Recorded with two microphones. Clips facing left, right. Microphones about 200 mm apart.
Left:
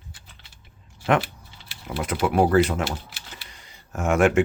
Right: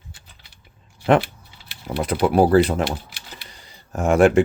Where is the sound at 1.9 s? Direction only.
35° right (ahead or behind).